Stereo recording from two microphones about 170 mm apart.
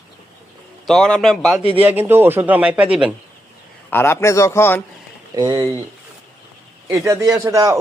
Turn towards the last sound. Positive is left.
turn(degrees=-15)  # may be behind; listen again after turning